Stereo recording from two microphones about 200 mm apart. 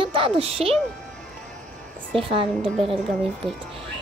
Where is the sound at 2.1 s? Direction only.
25° right (ahead or behind).